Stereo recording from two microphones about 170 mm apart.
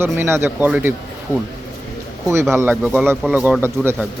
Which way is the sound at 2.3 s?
15° right (ahead or behind).